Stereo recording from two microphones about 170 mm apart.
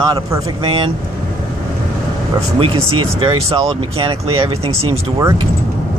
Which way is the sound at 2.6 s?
30° right (ahead or behind).